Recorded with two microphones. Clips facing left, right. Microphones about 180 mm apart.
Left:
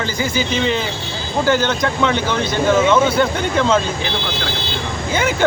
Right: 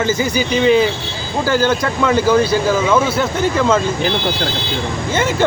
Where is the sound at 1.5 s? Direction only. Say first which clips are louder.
Right 2 dB; 5° right (ahead or behind).